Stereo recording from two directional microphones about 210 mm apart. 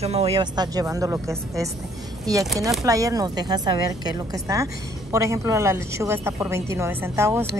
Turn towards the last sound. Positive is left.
turn(degrees=-10)  # may be behind; listen again after turning